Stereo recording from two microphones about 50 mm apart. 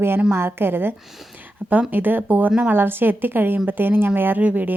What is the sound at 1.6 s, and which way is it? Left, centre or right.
A woman's voice, right.